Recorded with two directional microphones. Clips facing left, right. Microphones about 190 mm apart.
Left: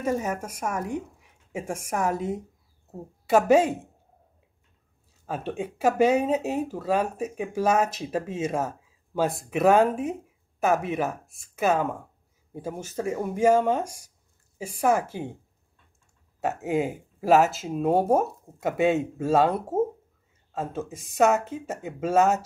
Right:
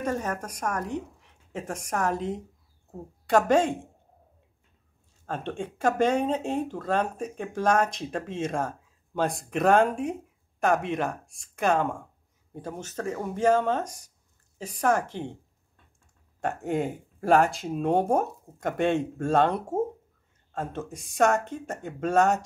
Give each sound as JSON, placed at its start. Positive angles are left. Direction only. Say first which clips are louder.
{"t": 0.0, "sound": "a woman's voice", "louder": "left 2 dB", "side_deg": 10}
{"t": 5.2, "sound": "speech", "louder": "left 2 dB", "side_deg": 5}
{"t": 16.3, "sound": "speech", "louder": "left 2 dB", "side_deg": 5}